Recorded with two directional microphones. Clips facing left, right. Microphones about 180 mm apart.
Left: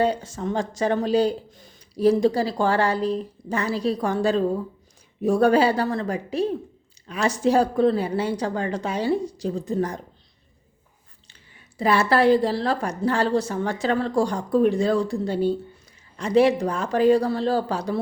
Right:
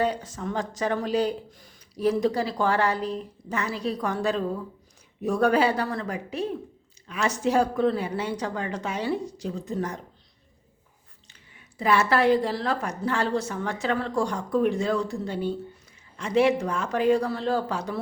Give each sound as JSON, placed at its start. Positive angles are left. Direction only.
{"t": 0.0, "sound": "speech", "side_deg": 30}
{"t": 11.3, "sound": "speech", "side_deg": 35}